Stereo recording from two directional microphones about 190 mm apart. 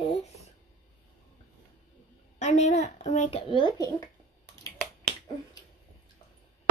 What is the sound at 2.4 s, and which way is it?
A child's voice, 40° left (ahead or behind).